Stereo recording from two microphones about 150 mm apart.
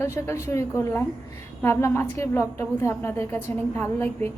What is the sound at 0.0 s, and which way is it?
A woman's voice, 20° left (ahead or behind).